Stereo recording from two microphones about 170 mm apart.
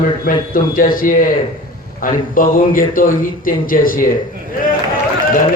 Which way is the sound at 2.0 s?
55° left (ahead or behind).